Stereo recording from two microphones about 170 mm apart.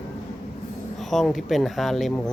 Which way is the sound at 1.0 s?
Centre (ahead or behind).